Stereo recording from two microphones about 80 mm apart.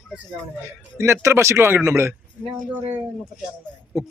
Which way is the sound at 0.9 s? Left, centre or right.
Right.